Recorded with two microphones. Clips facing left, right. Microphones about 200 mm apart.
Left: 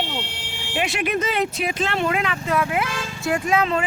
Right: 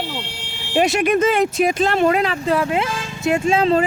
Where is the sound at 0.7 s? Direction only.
40° right (ahead or behind).